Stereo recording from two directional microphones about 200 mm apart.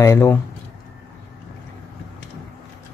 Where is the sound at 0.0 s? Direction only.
15° left (ahead or behind).